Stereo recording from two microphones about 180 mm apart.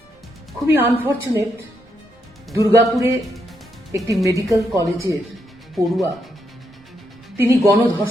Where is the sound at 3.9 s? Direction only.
15° right (ahead or behind).